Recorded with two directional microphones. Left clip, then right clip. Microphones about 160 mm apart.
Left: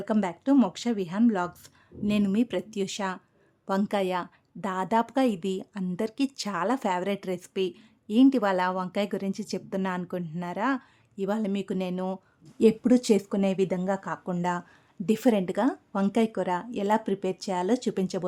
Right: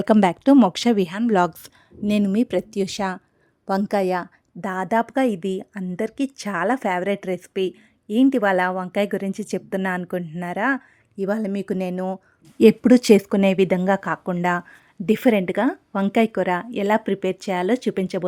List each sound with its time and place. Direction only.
0.0 s speech: 60° right (ahead or behind)
2.0 s a woman's voice: 35° right (ahead or behind)
12.5 s a woman's voice: 35° right (ahead or behind)
14.4 s a woman's voice: 25° right (ahead or behind)